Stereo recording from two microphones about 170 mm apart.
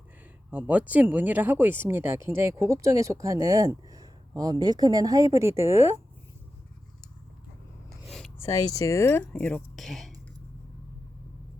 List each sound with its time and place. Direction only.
0.5 s speech: 10° right (ahead or behind)
8.0 s a sound: centre (ahead or behind)
8.4 s speech: 20° left (ahead or behind); by 10.1 s centre (ahead or behind)